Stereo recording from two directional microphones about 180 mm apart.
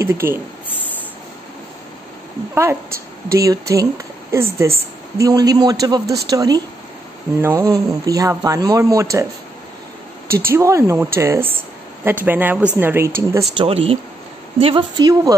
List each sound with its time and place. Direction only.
0.0 s speech: 15° right (ahead or behind)
2.5 s a woman's voice: 15° right (ahead or behind)
10.2 s speech: 55° right (ahead or behind)
10.5 s a woman's voice: 15° right (ahead or behind)
13.6 s speech: 30° right (ahead or behind)